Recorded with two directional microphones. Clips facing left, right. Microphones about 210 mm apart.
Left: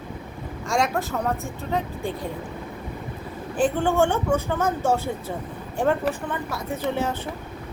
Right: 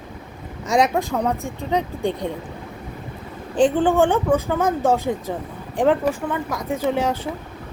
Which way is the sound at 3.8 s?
15° right (ahead or behind).